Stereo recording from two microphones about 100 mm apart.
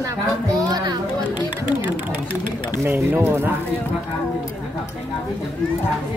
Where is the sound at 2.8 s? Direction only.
20° right (ahead or behind).